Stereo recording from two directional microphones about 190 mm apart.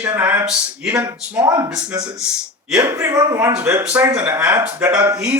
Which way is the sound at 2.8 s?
15° right (ahead or behind).